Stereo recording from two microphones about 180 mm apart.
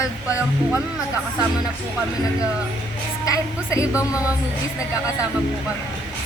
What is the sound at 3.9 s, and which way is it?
Speech, 5° right (ahead or behind).